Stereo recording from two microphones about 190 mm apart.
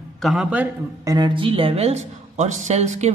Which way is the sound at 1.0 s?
20° right (ahead or behind).